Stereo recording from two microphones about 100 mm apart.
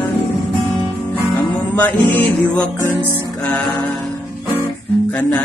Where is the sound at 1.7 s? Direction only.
15° left (ahead or behind).